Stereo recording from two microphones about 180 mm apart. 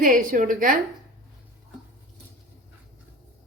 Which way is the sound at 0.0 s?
50° right (ahead or behind).